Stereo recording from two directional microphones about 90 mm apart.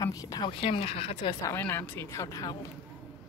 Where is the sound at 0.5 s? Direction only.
90° left.